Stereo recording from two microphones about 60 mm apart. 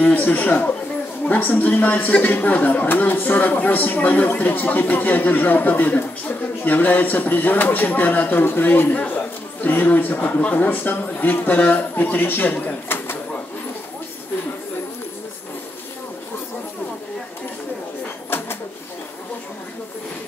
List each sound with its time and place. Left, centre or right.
0.0 s speech: left